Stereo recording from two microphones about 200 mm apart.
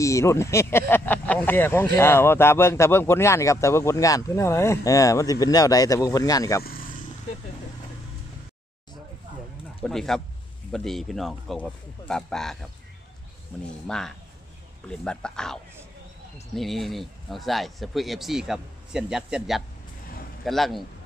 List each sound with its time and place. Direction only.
0.0 s speech: 15° left (ahead or behind)
6.6 s a sound: 45° left (ahead or behind)
9.8 s speech: centre (ahead or behind)
13.8 s speech: 5° left (ahead or behind)